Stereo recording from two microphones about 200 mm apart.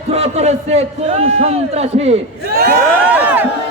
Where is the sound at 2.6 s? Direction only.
50° right (ahead or behind).